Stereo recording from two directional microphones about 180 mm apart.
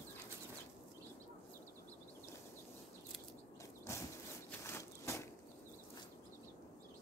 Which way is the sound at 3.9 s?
15° left (ahead or behind).